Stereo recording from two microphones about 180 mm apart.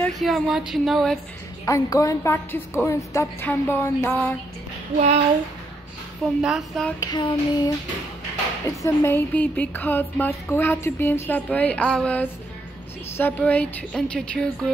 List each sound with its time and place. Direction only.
0.0 s speech: centre (ahead or behind)
1.7 s music: 20° left (ahead or behind)
6.4 s speech: centre (ahead or behind)
7.0 s child singing: 25° left (ahead or behind)
8.6 s music: 15° left (ahead or behind)